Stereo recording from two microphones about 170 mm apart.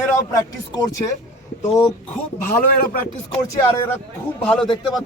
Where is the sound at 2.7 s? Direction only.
60° left (ahead or behind).